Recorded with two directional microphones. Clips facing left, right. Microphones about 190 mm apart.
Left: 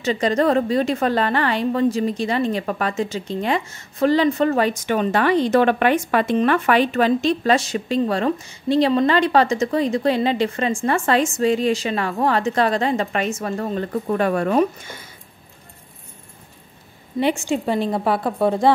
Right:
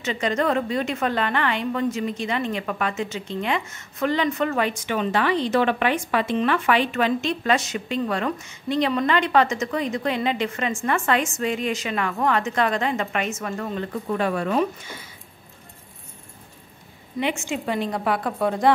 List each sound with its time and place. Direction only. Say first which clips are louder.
0.0 s a woman's voice: left 5 dB; 35° left (ahead or behind)
13.9 s speech: left 4 dB; 45° left (ahead or behind)
17.2 s a woman's voice: left 6 dB; 35° left (ahead or behind)